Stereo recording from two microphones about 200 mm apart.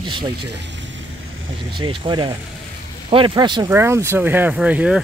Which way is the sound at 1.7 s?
25° right (ahead or behind).